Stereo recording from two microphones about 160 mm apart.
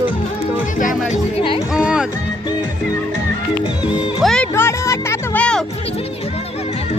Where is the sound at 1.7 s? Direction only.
5° right (ahead or behind).